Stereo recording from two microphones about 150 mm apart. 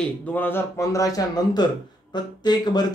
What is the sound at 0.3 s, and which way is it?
A man's voice, 15° left (ahead or behind).